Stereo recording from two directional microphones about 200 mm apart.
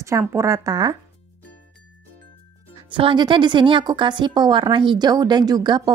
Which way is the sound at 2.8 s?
25° right (ahead or behind).